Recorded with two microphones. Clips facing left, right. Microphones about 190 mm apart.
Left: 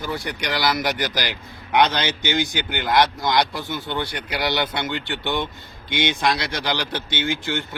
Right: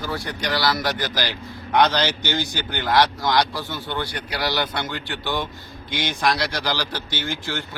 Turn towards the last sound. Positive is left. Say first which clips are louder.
# left 3 dB
turn(degrees=20)  # may be behind; listen again after turning